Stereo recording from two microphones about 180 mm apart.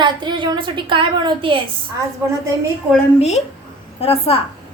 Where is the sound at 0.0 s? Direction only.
25° right (ahead or behind).